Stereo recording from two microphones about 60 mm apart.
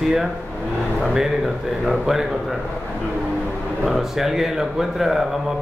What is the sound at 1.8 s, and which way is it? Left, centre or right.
Speech, centre.